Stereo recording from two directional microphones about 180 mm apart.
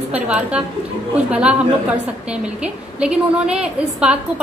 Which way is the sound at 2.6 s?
5° right (ahead or behind).